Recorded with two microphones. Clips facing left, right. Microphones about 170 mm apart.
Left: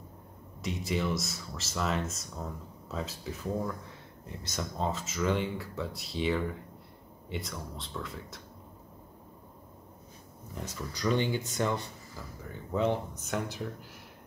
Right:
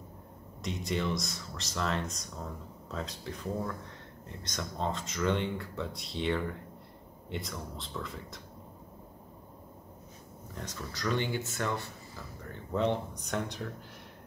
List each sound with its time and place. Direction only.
0.6 s speech: 5° left (ahead or behind)
10.5 s speech: 10° left (ahead or behind)
12.4 s speech: 5° left (ahead or behind)